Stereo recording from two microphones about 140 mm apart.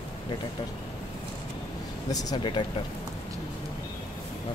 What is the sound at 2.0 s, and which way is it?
Speech, 25° left (ahead or behind).